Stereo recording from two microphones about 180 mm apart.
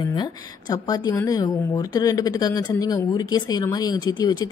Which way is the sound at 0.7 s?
20° left (ahead or behind).